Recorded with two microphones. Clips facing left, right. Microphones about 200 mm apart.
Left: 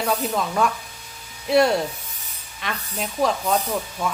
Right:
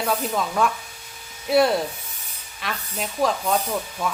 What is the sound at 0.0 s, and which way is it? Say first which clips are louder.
Speech: left 1 dB; centre (ahead or behind).